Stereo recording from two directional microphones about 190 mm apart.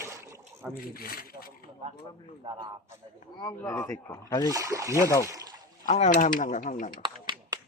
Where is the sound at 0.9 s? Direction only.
50° left (ahead or behind).